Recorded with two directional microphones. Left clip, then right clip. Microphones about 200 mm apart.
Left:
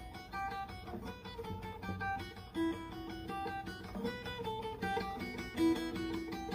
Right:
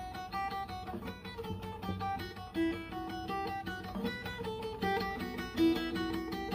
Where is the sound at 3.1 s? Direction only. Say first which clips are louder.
Right 3 dB; 20° right (ahead or behind).